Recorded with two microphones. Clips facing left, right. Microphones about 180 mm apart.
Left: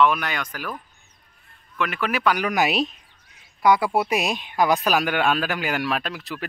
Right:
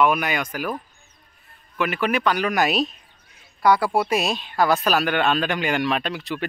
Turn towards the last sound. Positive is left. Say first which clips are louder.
# right 4 dB
turn(degrees=0)  # may be behind; listen again after turning